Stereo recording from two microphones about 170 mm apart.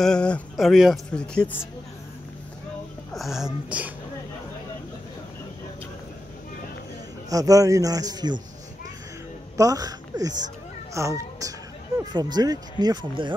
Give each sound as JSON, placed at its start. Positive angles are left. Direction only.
{"t": 0.0, "sound": "speech", "side_deg": 5}
{"t": 3.1, "sound": "speech", "side_deg": 0}
{"t": 7.2, "sound": "speech", "side_deg": -20}
{"t": 9.6, "sound": "a child's voice", "side_deg": -20}